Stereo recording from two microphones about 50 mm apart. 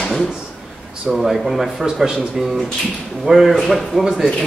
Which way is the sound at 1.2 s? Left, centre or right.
Centre.